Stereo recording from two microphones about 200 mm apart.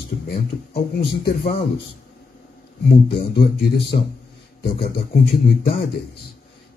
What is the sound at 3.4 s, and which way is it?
Speech, 60° left (ahead or behind).